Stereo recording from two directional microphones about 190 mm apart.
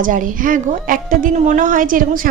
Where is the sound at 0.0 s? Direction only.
45° right (ahead or behind).